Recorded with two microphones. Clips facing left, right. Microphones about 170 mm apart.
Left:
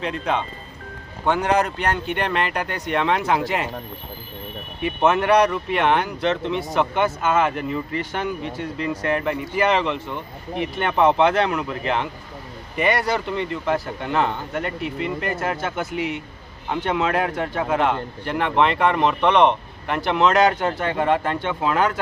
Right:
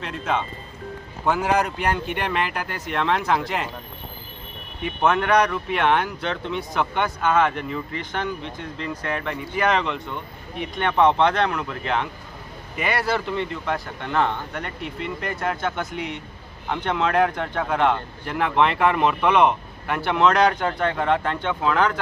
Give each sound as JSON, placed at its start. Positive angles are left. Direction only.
{"t": 0.0, "sound": "speech", "side_deg": 0}
{"t": 4.8, "sound": "speech", "side_deg": 5}